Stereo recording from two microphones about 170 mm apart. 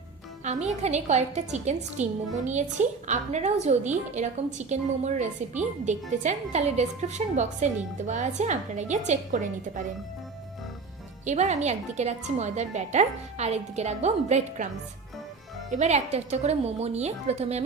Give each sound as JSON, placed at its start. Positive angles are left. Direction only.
{"t": 0.4, "sound": "a woman's voice", "side_deg": -45}
{"t": 11.3, "sound": "a woman's voice", "side_deg": -45}
{"t": 15.7, "sound": "a woman's voice", "side_deg": -40}